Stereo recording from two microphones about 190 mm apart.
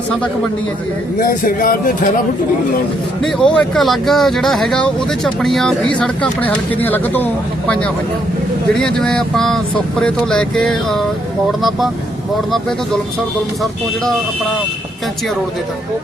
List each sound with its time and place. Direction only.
1.2 s speech: 45° left (ahead or behind)
3.2 s speech: 5° left (ahead or behind)
8.7 s speech: 5° left (ahead or behind)